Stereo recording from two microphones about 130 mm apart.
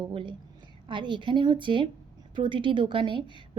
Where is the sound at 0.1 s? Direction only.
40° right (ahead or behind).